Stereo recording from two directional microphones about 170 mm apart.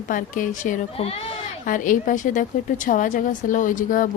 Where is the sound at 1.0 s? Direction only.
35° left (ahead or behind).